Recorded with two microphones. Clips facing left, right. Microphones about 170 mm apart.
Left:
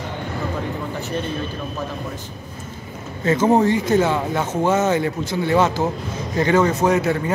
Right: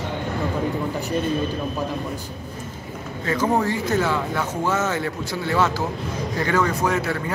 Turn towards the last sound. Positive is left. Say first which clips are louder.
# left 5 dB
turn(degrees=20)  # may be behind; listen again after turning